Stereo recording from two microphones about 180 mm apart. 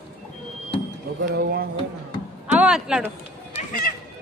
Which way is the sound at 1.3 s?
60° right (ahead or behind).